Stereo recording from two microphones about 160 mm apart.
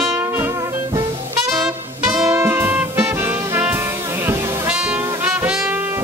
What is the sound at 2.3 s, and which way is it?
Music, 15° right (ahead or behind).